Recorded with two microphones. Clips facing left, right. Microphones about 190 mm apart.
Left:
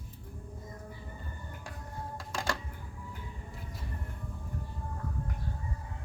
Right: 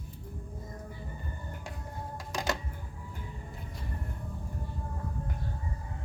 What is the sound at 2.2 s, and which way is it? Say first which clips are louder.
Music: right 2 dB; 20° right (ahead or behind).